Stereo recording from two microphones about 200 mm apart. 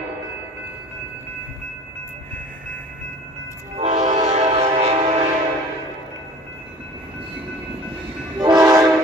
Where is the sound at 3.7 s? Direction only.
35° right (ahead or behind).